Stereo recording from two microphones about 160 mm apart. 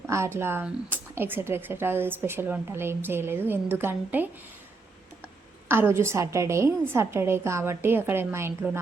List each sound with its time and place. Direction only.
0.1 s a woman's voice: 15° right (ahead or behind)
5.6 s a woman's voice: 15° right (ahead or behind)